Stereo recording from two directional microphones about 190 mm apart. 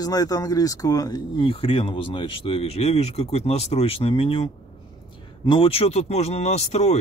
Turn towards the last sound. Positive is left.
turn(degrees=35)  # may be behind; listen again after turning